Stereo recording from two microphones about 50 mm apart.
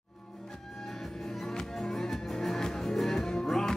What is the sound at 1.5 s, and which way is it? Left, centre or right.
Music, centre.